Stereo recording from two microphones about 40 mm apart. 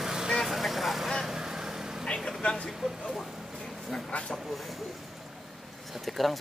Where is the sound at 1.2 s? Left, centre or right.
Centre.